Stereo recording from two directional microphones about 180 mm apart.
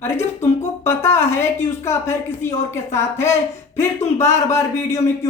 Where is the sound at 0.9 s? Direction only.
15° left (ahead or behind).